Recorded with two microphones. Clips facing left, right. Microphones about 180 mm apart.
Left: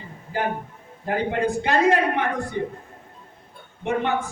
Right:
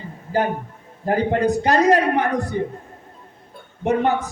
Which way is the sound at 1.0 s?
40° right (ahead or behind).